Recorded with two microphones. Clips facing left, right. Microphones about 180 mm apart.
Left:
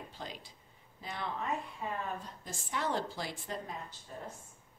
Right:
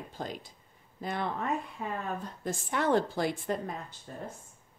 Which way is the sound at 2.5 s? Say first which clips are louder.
Right 8 dB; 55° right (ahead or behind).